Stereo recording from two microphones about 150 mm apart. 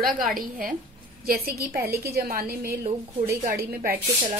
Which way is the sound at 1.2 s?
90° right.